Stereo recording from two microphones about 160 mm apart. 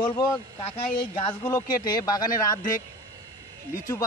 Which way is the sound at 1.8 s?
25° left (ahead or behind).